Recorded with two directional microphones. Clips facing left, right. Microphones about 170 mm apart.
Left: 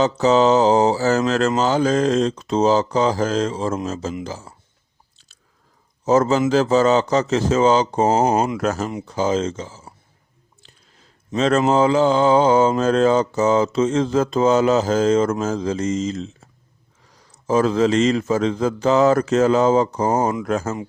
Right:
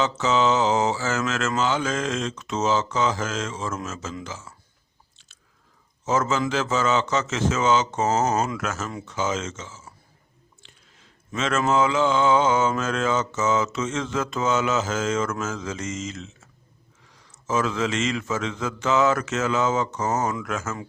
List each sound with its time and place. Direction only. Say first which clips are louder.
0.0 s mantra: left 6 dB; 35° left (ahead or behind)
6.1 s mantra: left 7 dB; 35° left (ahead or behind)
10.6 s chewing: left 4 dB; 40° left (ahead or behind)
11.3 s mantra: left 6 dB; 35° left (ahead or behind)